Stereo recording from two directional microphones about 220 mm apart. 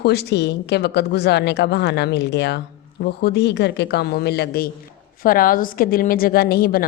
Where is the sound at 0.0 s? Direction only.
50° left (ahead or behind).